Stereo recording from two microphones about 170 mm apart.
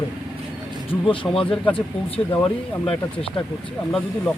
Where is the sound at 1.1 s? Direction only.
30° left (ahead or behind).